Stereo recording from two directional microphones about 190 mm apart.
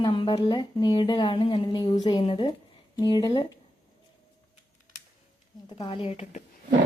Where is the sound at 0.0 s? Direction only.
25° left (ahead or behind).